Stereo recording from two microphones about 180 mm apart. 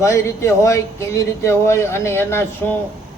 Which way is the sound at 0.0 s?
15° left (ahead or behind).